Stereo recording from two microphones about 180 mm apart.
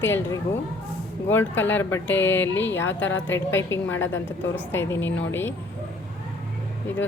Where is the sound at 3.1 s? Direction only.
90° left.